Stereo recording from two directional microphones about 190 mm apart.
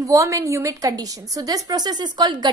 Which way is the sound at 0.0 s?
15° right (ahead or behind).